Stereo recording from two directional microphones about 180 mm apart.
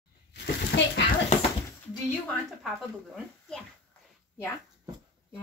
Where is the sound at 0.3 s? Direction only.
75° left (ahead or behind).